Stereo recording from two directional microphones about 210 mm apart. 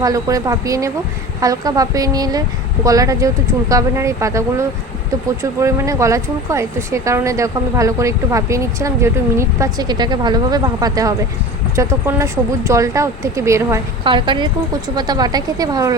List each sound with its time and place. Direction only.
0.0 s speech: 15° right (ahead or behind)